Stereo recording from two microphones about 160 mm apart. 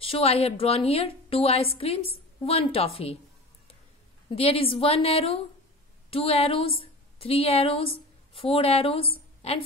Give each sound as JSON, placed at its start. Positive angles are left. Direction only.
{"t": 0.0, "sound": "a woman's voice", "side_deg": 35}
{"t": 4.4, "sound": "a woman's voice", "side_deg": 35}